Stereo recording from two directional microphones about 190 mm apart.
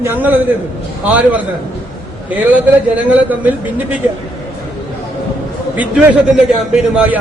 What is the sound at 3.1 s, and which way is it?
Speech, 10° right (ahead or behind).